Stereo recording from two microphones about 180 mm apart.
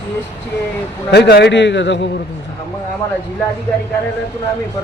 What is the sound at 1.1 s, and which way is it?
Speech, 70° left (ahead or behind).